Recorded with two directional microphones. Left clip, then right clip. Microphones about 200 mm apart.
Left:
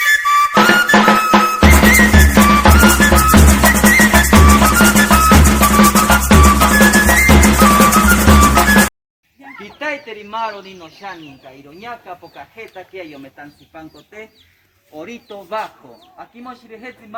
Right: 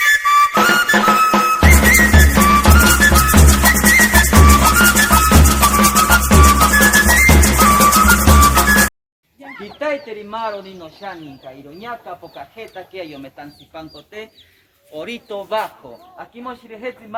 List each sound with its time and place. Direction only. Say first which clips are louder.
0.0 s music: even; centre (ahead or behind)
9.4 s bird: right 1 dB; 55° right (ahead or behind)
11.8 s speech: even; 55° right (ahead or behind)
14.9 s speech: right 4 dB; 50° right (ahead or behind)